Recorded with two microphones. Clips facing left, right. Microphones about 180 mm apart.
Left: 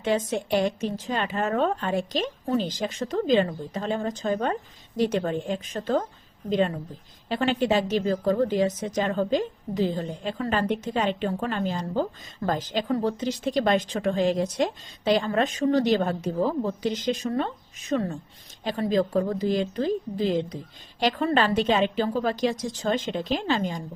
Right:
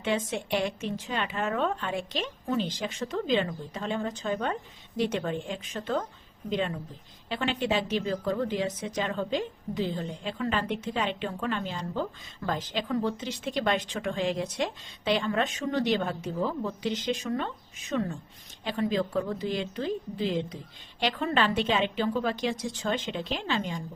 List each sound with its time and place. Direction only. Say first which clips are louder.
0.0 s a woman's voice: left 4 dB; 40° left (ahead or behind)